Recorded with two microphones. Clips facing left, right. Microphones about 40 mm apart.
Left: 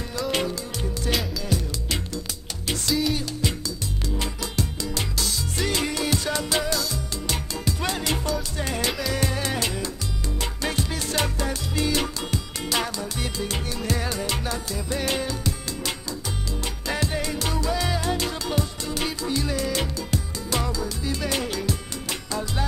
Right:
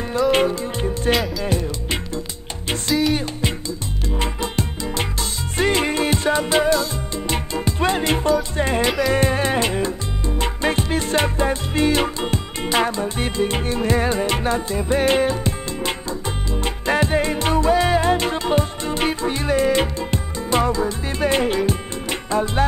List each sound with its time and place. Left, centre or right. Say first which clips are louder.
0.3 s music: right 6 dB; right
2.9 s music: right 5 dB; centre
3.2 s music: right 4 dB; right